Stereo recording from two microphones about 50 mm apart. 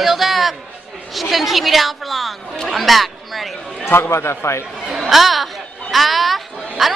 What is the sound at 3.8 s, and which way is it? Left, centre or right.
Speech, left.